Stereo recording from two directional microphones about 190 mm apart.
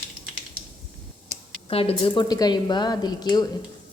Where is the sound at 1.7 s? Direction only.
30° left (ahead or behind).